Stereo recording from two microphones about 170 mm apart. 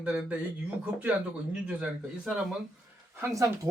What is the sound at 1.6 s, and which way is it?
Speech, 5° right (ahead or behind).